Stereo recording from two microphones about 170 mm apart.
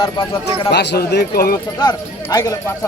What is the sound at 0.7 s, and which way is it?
Speech, 80° left.